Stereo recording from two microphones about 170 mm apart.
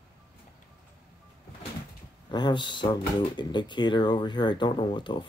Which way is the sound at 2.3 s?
25° left (ahead or behind).